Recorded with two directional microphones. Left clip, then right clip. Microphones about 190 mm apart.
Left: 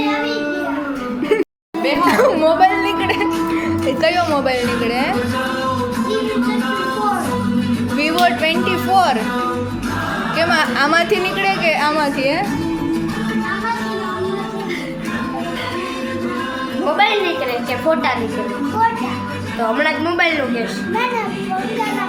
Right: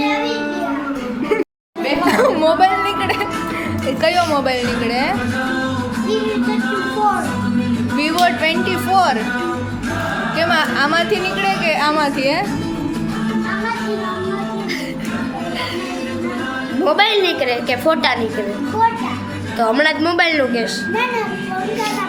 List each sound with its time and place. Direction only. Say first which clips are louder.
2.0 s a sound: even; 5° left (ahead or behind)
3.8 s speech: right 1 dB; centre (ahead or behind)
7.9 s speech: even; centre (ahead or behind)
10.3 s speech: left 1 dB; 5° left (ahead or behind)
10.8 s a woman's voice: left 1 dB; 20° left (ahead or behind); by 12.4 s centre (ahead or behind)
16.8 s a sound: right 1 dB; 55° right (ahead or behind)
19.7 s a man's voice: right 2 dB; 50° right (ahead or behind)